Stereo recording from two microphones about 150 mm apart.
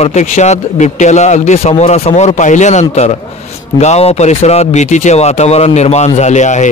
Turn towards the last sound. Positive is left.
turn(degrees=50)  # may be behind; listen again after turning